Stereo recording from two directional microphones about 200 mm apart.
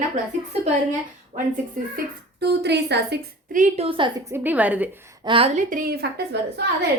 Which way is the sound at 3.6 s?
30° right (ahead or behind).